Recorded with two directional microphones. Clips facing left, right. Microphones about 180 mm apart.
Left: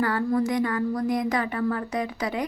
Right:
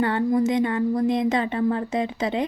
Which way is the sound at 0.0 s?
25° right (ahead or behind).